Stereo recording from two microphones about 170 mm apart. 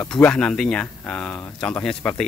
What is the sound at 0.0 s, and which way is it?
Speech, 5° left (ahead or behind).